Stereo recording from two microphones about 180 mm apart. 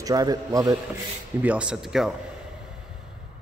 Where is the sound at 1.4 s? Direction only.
5° right (ahead or behind).